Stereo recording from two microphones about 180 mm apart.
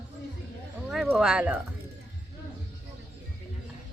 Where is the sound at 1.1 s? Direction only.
5° right (ahead or behind).